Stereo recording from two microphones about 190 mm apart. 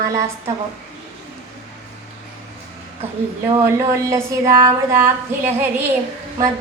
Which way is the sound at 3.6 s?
15° right (ahead or behind).